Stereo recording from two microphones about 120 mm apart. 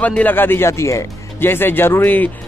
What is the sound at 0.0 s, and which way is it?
Speech, 15° left (ahead or behind).